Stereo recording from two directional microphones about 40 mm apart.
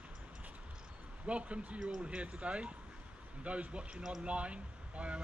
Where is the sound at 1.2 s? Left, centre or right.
Right.